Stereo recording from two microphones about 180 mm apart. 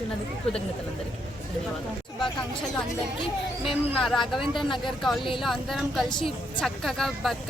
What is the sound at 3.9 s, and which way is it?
Speech, centre (ahead or behind).